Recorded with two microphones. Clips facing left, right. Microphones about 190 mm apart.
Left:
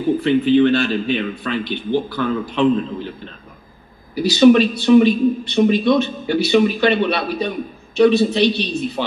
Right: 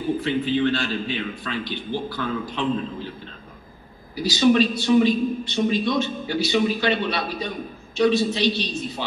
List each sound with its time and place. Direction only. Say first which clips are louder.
0.2 s a man's voice: left 11 dB; 60° left (ahead or behind)
4.1 s a man's voice: left 7 dB; 60° left (ahead or behind)